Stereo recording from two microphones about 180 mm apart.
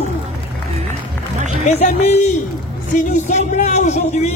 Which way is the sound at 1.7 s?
40° left (ahead or behind).